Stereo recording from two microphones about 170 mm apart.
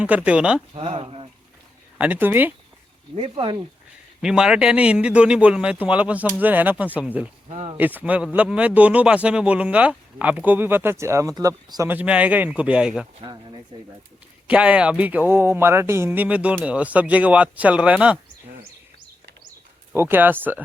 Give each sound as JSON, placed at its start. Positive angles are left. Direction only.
{"t": 0.0, "sound": "speech", "side_deg": -5}
{"t": 0.7, "sound": "speech", "side_deg": -35}
{"t": 2.0, "sound": "speech", "side_deg": -10}
{"t": 3.2, "sound": "speech", "side_deg": -35}
{"t": 4.2, "sound": "speech", "side_deg": -5}
{"t": 7.5, "sound": "speech", "side_deg": -40}
{"t": 7.8, "sound": "speech", "side_deg": -10}
{"t": 13.2, "sound": "speech", "side_deg": -25}
{"t": 14.4, "sound": "speech", "side_deg": -5}
{"t": 19.9, "sound": "speech", "side_deg": -10}